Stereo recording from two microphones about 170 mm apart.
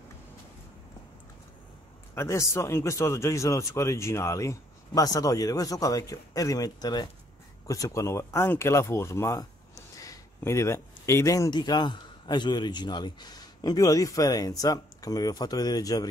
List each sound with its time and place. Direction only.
2.1 s speech: 15° left (ahead or behind)